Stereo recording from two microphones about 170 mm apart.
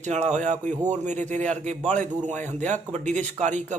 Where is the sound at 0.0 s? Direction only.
45° right (ahead or behind).